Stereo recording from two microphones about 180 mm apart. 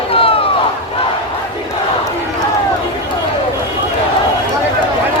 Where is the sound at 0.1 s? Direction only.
30° left (ahead or behind).